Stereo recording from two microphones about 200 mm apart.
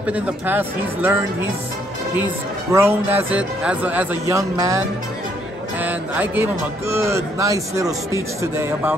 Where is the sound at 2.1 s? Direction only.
10° right (ahead or behind).